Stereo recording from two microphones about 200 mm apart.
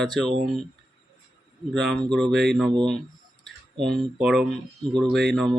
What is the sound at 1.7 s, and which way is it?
Speech, centre (ahead or behind).